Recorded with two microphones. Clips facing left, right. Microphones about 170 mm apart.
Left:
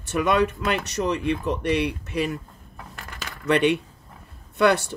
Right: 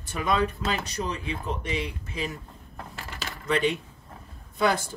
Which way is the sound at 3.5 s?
65° left (ahead or behind).